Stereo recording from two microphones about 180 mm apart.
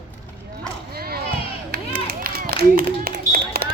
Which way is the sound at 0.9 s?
60° right (ahead or behind).